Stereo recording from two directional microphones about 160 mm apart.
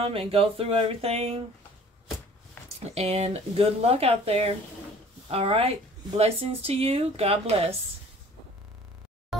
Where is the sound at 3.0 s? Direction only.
40° right (ahead or behind).